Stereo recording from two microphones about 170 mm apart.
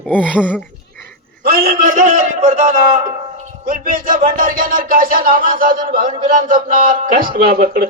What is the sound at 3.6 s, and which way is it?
Music, 60° right (ahead or behind).